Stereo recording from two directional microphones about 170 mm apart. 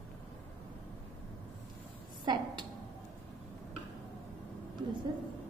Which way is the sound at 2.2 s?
25° right (ahead or behind).